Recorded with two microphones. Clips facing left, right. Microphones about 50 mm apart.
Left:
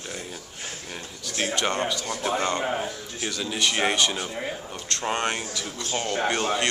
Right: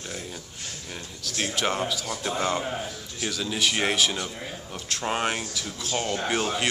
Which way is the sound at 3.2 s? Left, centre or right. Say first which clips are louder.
Even; centre.